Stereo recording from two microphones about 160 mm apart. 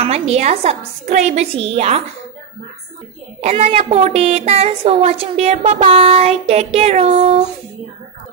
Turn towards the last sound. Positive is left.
turn(degrees=-40)  # may be behind; listen again after turning